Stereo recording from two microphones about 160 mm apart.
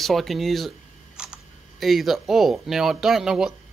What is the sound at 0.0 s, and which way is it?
Speech, centre (ahead or behind).